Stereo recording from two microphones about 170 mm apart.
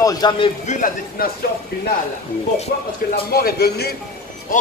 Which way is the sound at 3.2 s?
65° left (ahead or behind).